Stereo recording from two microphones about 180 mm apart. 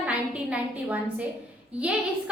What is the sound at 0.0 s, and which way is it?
A woman's voice, 5° right (ahead or behind).